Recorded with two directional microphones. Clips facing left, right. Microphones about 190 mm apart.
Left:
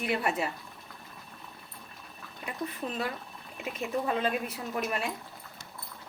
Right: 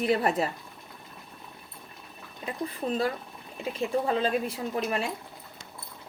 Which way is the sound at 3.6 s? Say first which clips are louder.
Right 4 dB; 30° right (ahead or behind).